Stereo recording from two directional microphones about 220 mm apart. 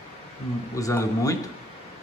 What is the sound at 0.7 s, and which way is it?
Speech, 15° left (ahead or behind).